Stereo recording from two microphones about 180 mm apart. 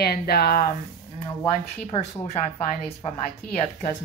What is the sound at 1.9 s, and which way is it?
Speech, 35° left (ahead or behind).